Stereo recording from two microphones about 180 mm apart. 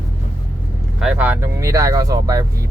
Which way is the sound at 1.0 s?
5° right (ahead or behind).